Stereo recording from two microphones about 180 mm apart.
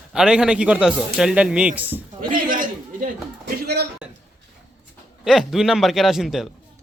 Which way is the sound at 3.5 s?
60° right (ahead or behind).